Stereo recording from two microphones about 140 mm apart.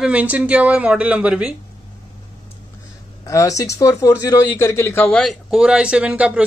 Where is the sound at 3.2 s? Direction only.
25° left (ahead or behind).